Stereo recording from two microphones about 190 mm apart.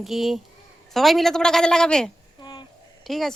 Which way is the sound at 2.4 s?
25° left (ahead or behind).